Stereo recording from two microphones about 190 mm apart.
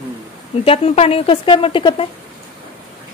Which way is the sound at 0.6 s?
30° left (ahead or behind).